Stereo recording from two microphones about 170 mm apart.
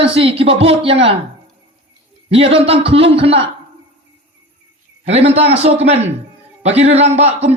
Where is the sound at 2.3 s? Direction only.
35° right (ahead or behind).